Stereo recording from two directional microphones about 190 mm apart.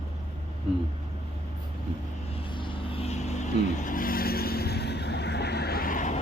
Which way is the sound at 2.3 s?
25° left (ahead or behind).